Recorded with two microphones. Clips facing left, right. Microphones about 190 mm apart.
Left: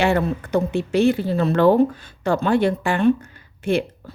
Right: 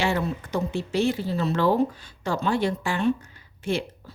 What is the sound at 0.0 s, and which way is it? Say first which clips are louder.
A woman's voice: left 6 dB; 60° left (ahead or behind).